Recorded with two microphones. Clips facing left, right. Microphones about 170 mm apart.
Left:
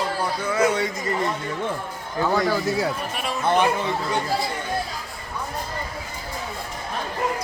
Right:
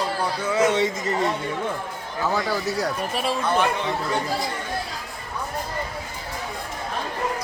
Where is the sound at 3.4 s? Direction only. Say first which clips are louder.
Left 4 dB; 20° left (ahead or behind).